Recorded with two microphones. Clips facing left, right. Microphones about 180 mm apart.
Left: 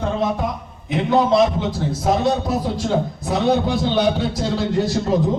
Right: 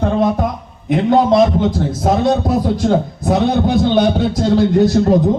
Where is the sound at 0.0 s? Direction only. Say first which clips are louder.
Right 6 dB; 50° right (ahead or behind).